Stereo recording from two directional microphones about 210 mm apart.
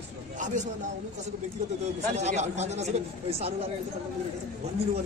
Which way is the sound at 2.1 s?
30° right (ahead or behind).